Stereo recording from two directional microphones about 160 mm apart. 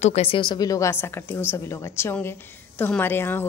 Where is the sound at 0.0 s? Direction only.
40° left (ahead or behind).